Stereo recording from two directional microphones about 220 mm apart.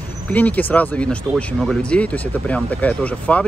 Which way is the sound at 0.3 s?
5° left (ahead or behind).